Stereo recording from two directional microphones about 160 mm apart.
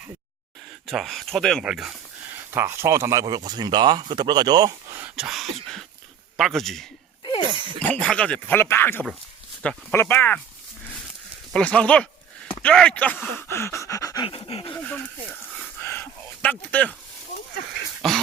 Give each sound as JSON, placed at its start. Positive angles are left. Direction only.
{"t": 0.9, "sound": "speech", "side_deg": 0}
{"t": 2.5, "sound": "speech", "side_deg": -15}
{"t": 4.9, "sound": "speech", "side_deg": -10}
{"t": 7.3, "sound": "a sound", "side_deg": 30}
{"t": 7.8, "sound": "speech", "side_deg": 5}
{"t": 11.5, "sound": "speech", "side_deg": 5}
{"t": 13.3, "sound": "pant", "side_deg": 15}
{"t": 14.3, "sound": "pant", "side_deg": 35}
{"t": 14.7, "sound": "a sound", "side_deg": 5}